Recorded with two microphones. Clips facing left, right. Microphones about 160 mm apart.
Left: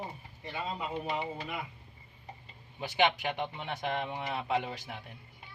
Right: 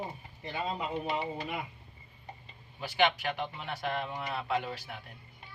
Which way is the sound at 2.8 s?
20° left (ahead or behind).